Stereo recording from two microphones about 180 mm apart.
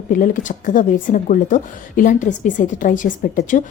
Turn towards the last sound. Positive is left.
turn(degrees=50)  # may be behind; listen again after turning